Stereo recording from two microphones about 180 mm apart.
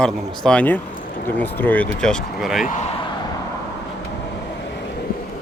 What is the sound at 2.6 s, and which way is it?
Speech, 45° left (ahead or behind).